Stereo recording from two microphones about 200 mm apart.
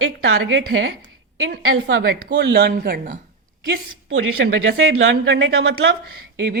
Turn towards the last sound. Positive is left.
turn(degrees=-55)  # may be behind; listen again after turning